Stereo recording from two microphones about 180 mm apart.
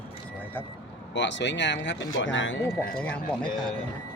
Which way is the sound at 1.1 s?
85° left.